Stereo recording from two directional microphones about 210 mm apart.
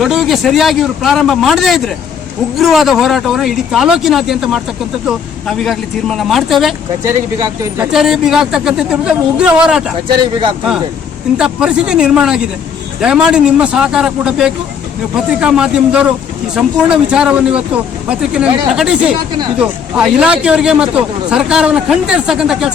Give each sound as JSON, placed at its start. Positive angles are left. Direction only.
{"t": 0.0, "sound": "a man's voice", "side_deg": 0}
{"t": 7.0, "sound": "speech", "side_deg": -15}
{"t": 7.9, "sound": "a man's voice", "side_deg": 0}
{"t": 10.1, "sound": "speech", "side_deg": -25}
{"t": 11.3, "sound": "a man's voice", "side_deg": -5}